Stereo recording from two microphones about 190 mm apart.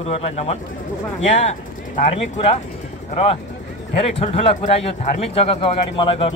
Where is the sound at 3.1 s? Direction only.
30° left (ahead or behind).